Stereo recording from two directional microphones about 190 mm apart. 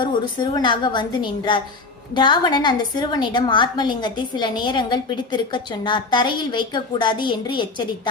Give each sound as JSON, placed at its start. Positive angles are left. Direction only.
{"t": 0.0, "sound": "a woman's voice", "side_deg": 25}